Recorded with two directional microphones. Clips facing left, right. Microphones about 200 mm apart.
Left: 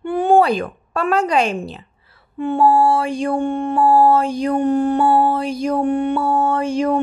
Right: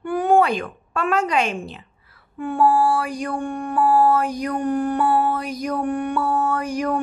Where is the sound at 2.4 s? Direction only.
25° left (ahead or behind).